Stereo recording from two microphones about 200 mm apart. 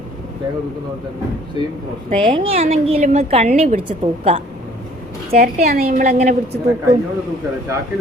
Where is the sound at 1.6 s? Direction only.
20° right (ahead or behind).